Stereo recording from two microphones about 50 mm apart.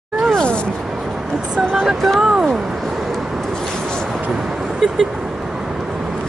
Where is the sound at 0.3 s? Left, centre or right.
Centre.